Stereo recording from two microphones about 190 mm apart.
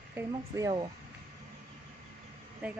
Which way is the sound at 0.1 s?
15° right (ahead or behind).